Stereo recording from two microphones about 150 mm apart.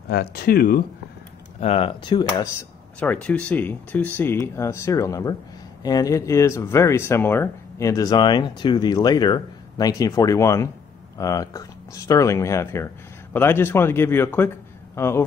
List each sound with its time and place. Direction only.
0.1 s speech: 85° left
1.6 s speech: 40° left (ahead or behind)
3.0 s speech: 10° left (ahead or behind)